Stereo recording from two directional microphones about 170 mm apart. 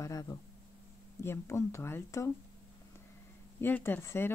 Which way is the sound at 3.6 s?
10° left (ahead or behind).